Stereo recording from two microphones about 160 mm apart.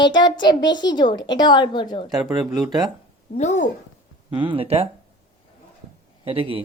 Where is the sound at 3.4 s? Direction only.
50° left (ahead or behind).